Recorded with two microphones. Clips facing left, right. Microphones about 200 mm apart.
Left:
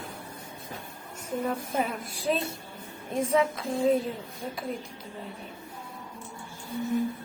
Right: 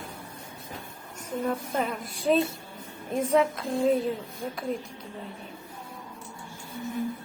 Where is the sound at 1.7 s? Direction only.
Centre (ahead or behind).